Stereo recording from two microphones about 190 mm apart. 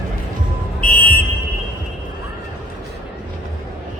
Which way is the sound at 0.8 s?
5° left (ahead or behind).